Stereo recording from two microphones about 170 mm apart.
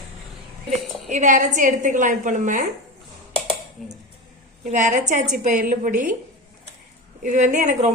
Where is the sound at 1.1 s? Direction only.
45° right (ahead or behind).